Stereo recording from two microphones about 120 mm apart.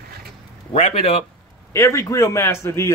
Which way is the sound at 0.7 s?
55° left (ahead or behind).